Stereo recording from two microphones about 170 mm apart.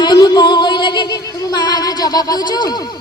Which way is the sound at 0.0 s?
25° left (ahead or behind).